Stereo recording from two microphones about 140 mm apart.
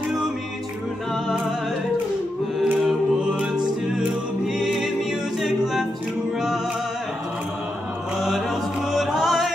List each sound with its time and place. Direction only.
2.6 s a capella: 5° right (ahead or behind)
4.5 s music: 5° right (ahead or behind)
8.2 s music: centre (ahead or behind)